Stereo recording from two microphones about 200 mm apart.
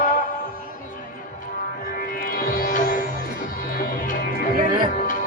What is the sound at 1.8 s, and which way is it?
Sitar, 45° left (ahead or behind).